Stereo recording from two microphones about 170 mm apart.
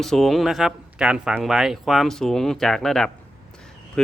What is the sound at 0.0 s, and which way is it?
Speech, centre (ahead or behind).